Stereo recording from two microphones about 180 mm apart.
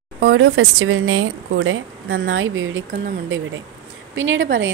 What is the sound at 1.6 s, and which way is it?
A woman's voice, 90° right.